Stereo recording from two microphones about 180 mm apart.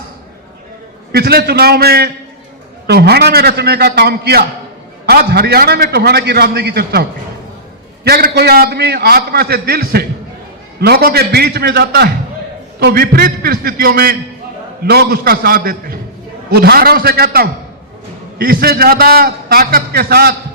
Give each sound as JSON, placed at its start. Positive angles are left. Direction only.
{"t": 1.1, "sound": "a man's voice", "side_deg": -60}
{"t": 8.0, "sound": "a man's voice", "side_deg": -60}